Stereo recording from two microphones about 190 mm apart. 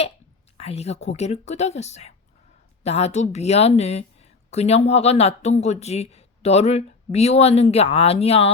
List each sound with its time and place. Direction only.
0.5 s a woman's voice: 35° left (ahead or behind)